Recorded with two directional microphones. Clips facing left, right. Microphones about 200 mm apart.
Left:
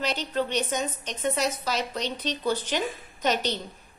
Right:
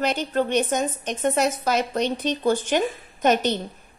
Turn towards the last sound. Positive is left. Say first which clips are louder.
# right 6 dB
turn(degrees=-50)  # may be behind; listen again after turning